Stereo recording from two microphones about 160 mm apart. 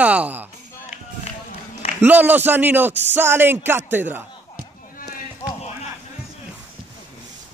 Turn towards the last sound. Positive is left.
turn(degrees=20)  # may be behind; listen again after turning